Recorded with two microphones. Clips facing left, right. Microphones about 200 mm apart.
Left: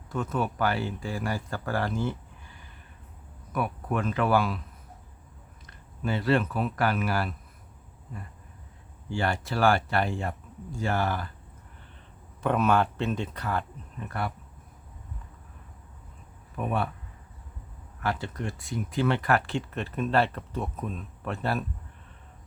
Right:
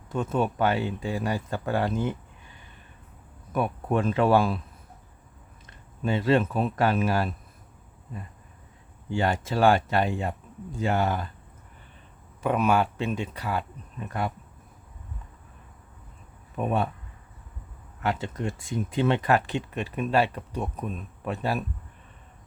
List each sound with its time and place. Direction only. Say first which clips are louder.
0.1 s speech: right 3 dB; 25° right (ahead or behind)
3.5 s speech: right 4 dB; 25° right (ahead or behind)
6.0 s speech: right 3 dB; 20° right (ahead or behind)
9.1 s speech: right 3 dB; 20° right (ahead or behind)
12.4 s speech: right 1 dB; 10° right (ahead or behind)
16.6 s speech: right 3 dB; 20° right (ahead or behind)
18.0 s speech: right 2 dB; 20° right (ahead or behind)